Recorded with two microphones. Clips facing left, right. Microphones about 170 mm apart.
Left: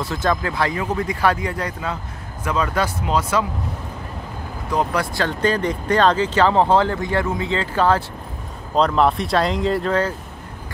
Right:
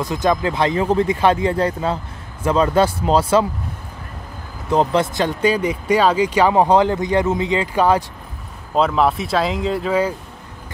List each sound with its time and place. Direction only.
0.0 s speech: 15° right (ahead or behind)
4.6 s speech: 25° right (ahead or behind)
8.7 s speech: 5° right (ahead or behind)